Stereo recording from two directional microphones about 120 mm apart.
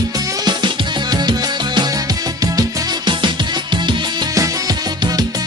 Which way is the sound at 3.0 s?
40° right (ahead or behind).